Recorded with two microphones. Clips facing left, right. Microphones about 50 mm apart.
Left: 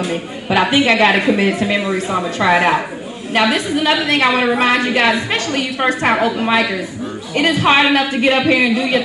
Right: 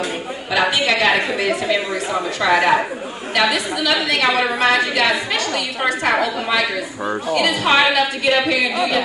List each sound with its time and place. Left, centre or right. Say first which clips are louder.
0.5 s a woman's voice: left 4 dB; left